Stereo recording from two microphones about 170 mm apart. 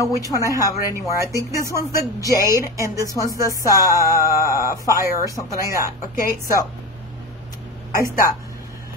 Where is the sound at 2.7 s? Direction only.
20° right (ahead or behind).